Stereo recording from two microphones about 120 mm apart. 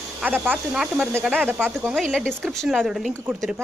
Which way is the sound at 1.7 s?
Centre (ahead or behind).